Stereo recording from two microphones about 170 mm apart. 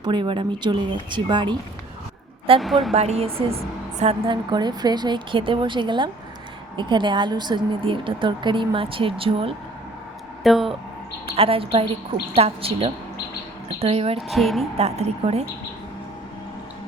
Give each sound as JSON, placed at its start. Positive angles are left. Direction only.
{"t": 0.0, "sound": "a woman's voice", "side_deg": -30}
{"t": 2.6, "sound": "a woman's voice", "side_deg": 0}
{"t": 2.9, "sound": "a woman's voice", "side_deg": -40}
{"t": 10.4, "sound": "a woman's voice", "side_deg": 0}
{"t": 11.3, "sound": "a woman's voice", "side_deg": -35}
{"t": 14.2, "sound": "a woman's voice", "side_deg": 0}
{"t": 14.6, "sound": "a woman's voice", "side_deg": -40}